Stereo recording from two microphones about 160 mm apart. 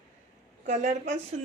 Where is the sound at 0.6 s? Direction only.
45° right (ahead or behind).